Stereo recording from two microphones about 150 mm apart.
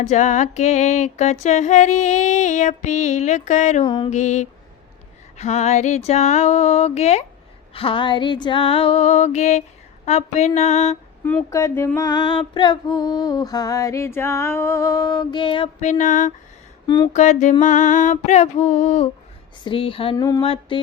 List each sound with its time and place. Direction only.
0.1 s female singing: 55° left (ahead or behind)
3.8 s female singing: 30° left (ahead or behind)
4.1 s female singing: 50° left (ahead or behind)
11.5 s female singing: 15° left (ahead or behind); by 15.7 s 35° left (ahead or behind)
15.8 s a sound: 55° left (ahead or behind)
16.8 s speech: 30° left (ahead or behind)
17.1 s female singing: 55° left (ahead or behind)
19.6 s female singing: 35° left (ahead or behind)
20.1 s female singing: 25° left (ahead or behind)
20.4 s female singing: 40° left (ahead or behind)